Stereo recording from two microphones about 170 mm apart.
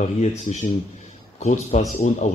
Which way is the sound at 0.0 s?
45° left (ahead or behind).